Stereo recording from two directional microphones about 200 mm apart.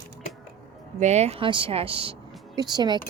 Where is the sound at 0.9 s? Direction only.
35° right (ahead or behind).